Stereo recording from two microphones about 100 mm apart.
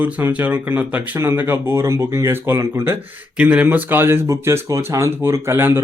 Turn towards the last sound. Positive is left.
turn(degrees=-25)  # may be behind; listen again after turning